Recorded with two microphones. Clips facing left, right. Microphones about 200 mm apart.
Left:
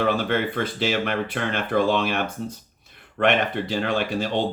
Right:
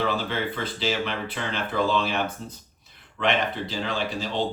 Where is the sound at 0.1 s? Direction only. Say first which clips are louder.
Left 5 dB; 55° left (ahead or behind).